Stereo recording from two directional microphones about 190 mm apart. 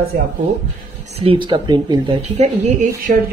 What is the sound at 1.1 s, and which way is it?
Speech, 30° right (ahead or behind).